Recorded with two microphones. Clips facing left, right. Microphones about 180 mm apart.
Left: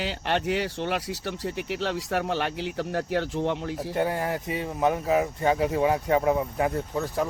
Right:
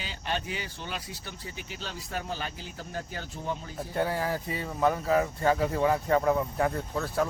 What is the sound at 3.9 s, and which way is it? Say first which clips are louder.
Speech: left 1 dB; 15° left (ahead or behind).